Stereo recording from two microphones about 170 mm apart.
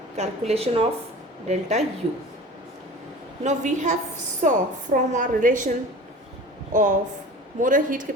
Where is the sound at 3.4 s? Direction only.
45° right (ahead or behind).